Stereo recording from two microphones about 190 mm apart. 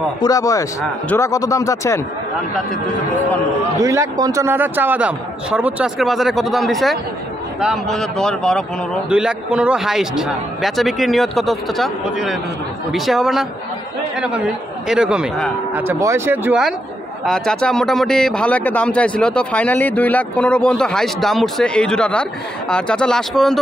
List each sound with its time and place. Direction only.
0.2 s speech: 15° left (ahead or behind)
3.8 s a man's voice: 15° right (ahead or behind); by 23.6 s centre (ahead or behind)